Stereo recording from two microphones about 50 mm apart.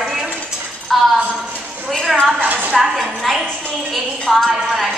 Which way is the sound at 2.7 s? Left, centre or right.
Centre.